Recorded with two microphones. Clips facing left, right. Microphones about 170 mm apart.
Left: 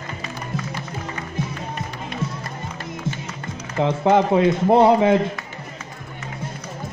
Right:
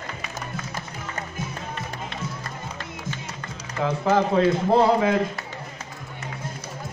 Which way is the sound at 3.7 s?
25° left (ahead or behind).